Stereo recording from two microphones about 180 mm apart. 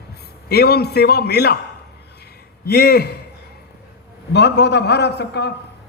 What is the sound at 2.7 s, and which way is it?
Speech, 60° left (ahead or behind).